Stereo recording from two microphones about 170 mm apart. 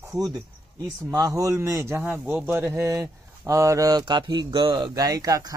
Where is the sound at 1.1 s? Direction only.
20° right (ahead or behind).